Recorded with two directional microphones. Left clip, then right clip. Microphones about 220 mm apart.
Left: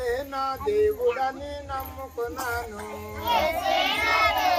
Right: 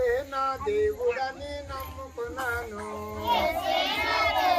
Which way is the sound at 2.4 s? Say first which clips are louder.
Right 1 dB; 55° left (ahead or behind).